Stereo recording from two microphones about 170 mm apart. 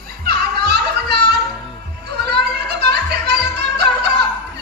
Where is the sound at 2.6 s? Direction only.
80° right.